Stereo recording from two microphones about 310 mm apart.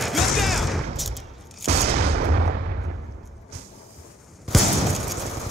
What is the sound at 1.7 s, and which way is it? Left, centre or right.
Gunshot, right.